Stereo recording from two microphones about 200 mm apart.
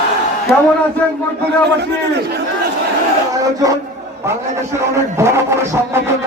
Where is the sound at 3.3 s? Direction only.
15° right (ahead or behind).